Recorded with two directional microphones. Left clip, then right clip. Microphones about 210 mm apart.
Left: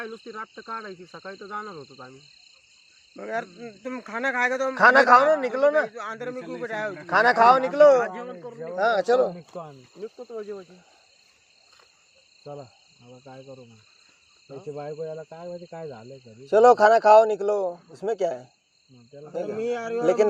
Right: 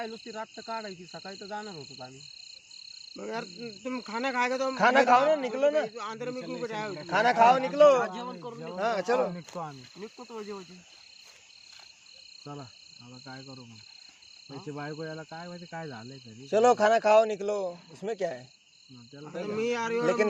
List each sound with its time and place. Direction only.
0.0 s speech: 15° right (ahead or behind)
3.2 s speech: 10° left (ahead or behind)
4.8 s a man's voice: 20° left (ahead or behind)
5.8 s speech: 5° left (ahead or behind)
7.1 s speech: 20° left (ahead or behind)
13.2 s speech: 10° left (ahead or behind)
14.7 s a man's voice: 20° left (ahead or behind)
14.9 s speech: centre (ahead or behind)
16.5 s speech: 15° left (ahead or behind)
19.5 s speech: centre (ahead or behind)